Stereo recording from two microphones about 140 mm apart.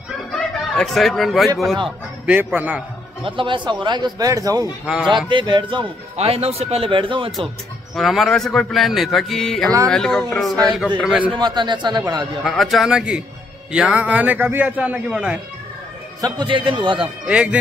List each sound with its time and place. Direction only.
0.3 s music: centre (ahead or behind)
2.2 s a man's voice: 10° right (ahead or behind)
3.3 s speech: 35° right (ahead or behind)
4.8 s a man's voice: 5° right (ahead or behind)
5.1 s speech: 35° right (ahead or behind)
6.1 s speech: 45° right (ahead or behind)
7.9 s a man's voice: centre (ahead or behind)
11.1 s a man's voice: 10° right (ahead or behind)
11.3 s speech: 30° right (ahead or behind)
12.4 s a man's voice: centre (ahead or behind)
16.2 s speech: 30° right (ahead or behind)
17.3 s a man's voice: 10° right (ahead or behind)